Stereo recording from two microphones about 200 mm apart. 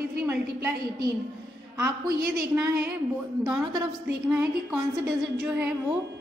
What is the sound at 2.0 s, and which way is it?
Speech, 50° right (ahead or behind).